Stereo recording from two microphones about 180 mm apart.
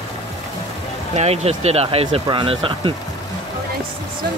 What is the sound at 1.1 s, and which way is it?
Speech, 35° right (ahead or behind).